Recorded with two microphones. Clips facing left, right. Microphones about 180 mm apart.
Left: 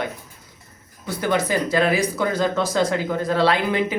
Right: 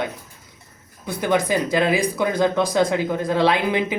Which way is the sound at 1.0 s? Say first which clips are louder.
Right 1 dB; 15° right (ahead or behind).